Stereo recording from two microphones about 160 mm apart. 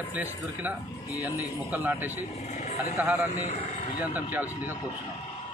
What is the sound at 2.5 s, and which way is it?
Speech, 45° left (ahead or behind).